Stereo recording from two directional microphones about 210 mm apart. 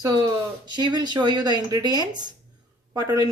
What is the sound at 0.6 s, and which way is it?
A woman's voice, 20° right (ahead or behind).